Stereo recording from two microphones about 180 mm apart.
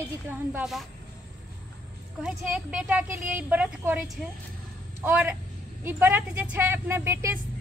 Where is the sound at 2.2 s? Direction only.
5° right (ahead or behind).